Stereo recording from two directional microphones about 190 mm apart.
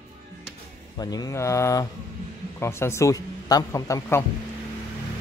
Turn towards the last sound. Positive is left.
turn(degrees=15)  # may be behind; listen again after turning